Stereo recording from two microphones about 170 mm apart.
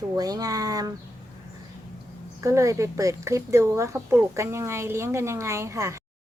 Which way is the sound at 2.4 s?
20° right (ahead or behind).